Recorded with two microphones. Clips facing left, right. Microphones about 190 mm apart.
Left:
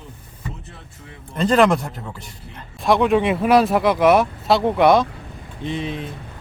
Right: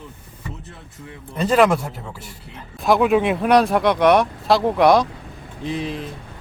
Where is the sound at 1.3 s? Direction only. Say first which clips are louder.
Even; 5° right (ahead or behind).